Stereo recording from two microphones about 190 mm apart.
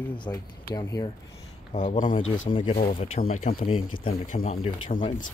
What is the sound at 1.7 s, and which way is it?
Speech, 40° left (ahead or behind).